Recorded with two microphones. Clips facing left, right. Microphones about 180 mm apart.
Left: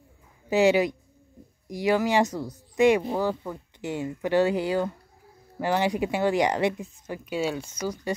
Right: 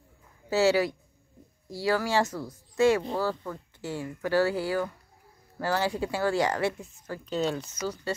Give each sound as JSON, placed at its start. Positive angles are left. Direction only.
{"t": 0.5, "sound": "speech", "side_deg": 15}